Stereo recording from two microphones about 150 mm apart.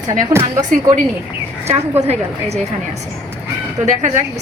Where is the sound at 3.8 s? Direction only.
55° right (ahead or behind).